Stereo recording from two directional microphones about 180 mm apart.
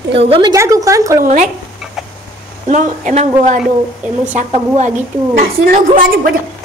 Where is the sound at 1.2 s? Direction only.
45° right (ahead or behind).